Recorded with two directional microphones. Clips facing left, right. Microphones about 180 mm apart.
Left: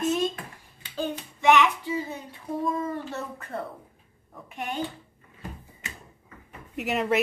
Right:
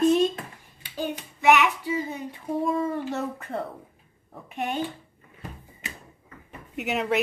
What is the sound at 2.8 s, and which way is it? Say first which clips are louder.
Speech: right 4 dB; 20° right (ahead or behind).